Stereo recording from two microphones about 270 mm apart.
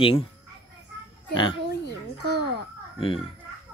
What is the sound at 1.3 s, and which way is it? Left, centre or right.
Speech, centre.